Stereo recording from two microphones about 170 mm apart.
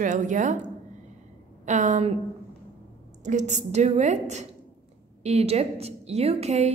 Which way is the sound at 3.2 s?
45° right (ahead or behind).